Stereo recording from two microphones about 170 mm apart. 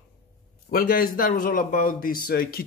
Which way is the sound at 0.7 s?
60° left (ahead or behind).